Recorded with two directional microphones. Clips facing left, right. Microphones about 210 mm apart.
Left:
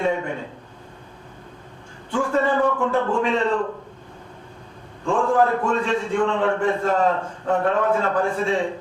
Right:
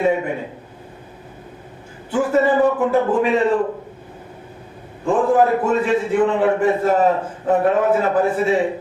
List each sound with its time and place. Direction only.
0.0 s a sound: 15° right (ahead or behind)
2.1 s a man's voice: 20° right (ahead or behind)
5.0 s a man's voice: 20° right (ahead or behind)